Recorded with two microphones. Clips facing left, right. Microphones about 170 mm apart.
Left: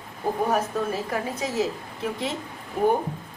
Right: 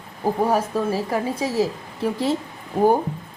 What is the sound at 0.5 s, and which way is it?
A woman's voice, 30° right (ahead or behind).